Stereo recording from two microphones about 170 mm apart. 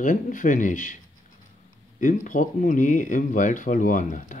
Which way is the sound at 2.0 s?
50° left (ahead or behind).